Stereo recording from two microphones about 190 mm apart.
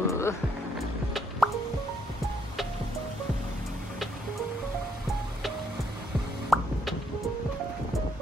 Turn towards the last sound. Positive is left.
turn(degrees=0)  # may be behind; listen again after turning